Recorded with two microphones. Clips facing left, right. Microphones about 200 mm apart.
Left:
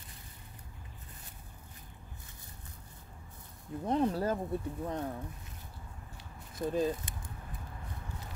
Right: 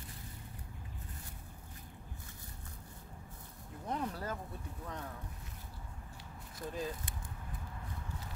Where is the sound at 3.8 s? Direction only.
30° left (ahead or behind).